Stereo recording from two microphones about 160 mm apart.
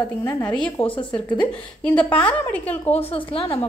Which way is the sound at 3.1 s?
35° left (ahead or behind).